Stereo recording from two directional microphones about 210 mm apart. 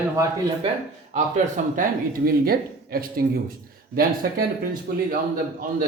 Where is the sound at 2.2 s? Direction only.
45° right (ahead or behind).